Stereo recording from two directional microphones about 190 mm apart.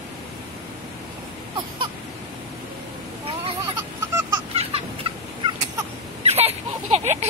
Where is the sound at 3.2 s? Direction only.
25° right (ahead or behind).